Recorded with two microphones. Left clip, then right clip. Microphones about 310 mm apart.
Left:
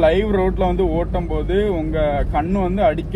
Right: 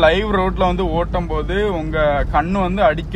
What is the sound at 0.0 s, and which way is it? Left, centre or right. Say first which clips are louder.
Speech: right 1 dB; right.